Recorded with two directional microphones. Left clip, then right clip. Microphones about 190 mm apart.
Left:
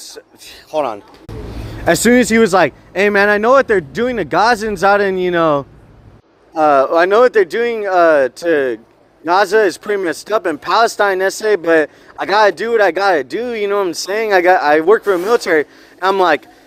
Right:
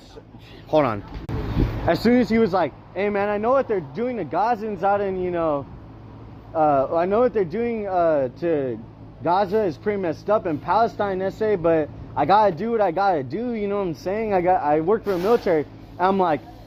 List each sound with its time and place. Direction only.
0.7 s speech: 15° left (ahead or behind)
1.9 s speech: 35° left (ahead or behind)